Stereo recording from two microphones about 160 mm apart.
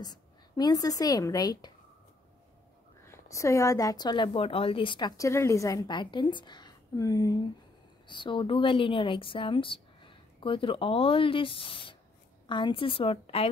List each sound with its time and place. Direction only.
0.0 s a woman's voice: 25° left (ahead or behind)
3.1 s a woman's voice: 20° left (ahead or behind); by 13.5 s 35° left (ahead or behind)